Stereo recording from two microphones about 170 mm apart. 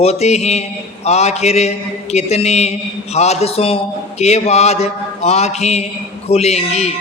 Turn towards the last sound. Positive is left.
turn(degrees=40)  # may be behind; listen again after turning